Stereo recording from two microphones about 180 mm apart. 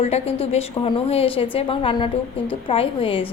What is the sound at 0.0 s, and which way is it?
A woman's voice, 35° left (ahead or behind).